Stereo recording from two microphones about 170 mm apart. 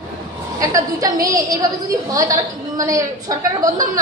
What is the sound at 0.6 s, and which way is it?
A woman's voice, 20° right (ahead or behind).